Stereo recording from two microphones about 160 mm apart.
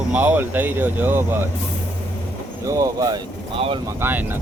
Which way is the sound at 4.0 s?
15° right (ahead or behind).